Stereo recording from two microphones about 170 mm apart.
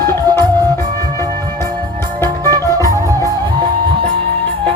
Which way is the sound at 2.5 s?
20° right (ahead or behind).